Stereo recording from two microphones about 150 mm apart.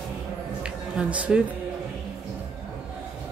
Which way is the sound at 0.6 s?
10° right (ahead or behind).